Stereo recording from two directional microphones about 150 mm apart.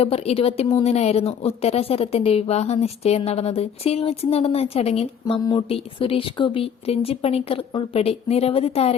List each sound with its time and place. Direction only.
0.0 s a woman's voice: 40° left (ahead or behind)
5.4 s speech: 25° left (ahead or behind)
5.6 s speech: 40° left (ahead or behind)